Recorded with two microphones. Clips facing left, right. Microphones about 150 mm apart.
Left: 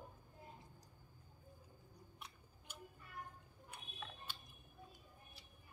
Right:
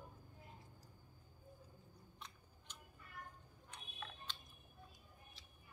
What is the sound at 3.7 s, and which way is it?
Tick-tock, 10° left (ahead or behind).